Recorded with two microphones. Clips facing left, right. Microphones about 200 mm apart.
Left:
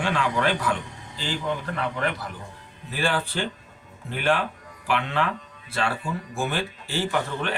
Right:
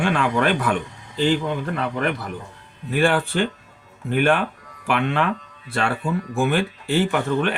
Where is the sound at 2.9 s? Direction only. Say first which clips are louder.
Right 7 dB; 55° right (ahead or behind).